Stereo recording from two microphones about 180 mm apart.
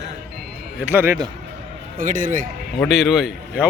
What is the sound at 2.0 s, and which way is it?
Speech, 45° right (ahead or behind).